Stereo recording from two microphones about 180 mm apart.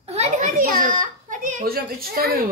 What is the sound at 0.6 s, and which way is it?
A child's voice, 45° right (ahead or behind).